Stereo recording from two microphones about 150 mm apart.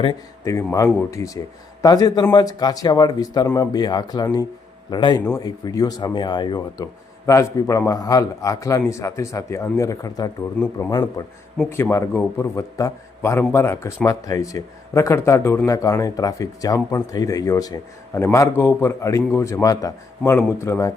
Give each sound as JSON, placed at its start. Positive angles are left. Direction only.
{"t": 0.4, "sound": "a man's voice", "side_deg": 20}